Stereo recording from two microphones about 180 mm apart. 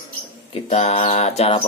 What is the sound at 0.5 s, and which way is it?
Mantra, 35° left (ahead or behind).